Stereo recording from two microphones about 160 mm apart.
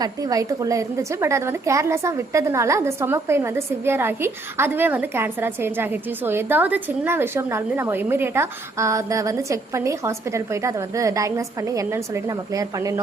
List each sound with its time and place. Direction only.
0.0 s a woman's voice: 20° right (ahead or behind)